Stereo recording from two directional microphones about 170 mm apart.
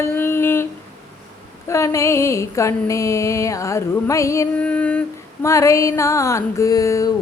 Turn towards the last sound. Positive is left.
turn(degrees=20)  # may be behind; listen again after turning